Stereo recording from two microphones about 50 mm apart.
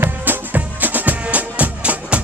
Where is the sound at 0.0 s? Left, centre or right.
Right.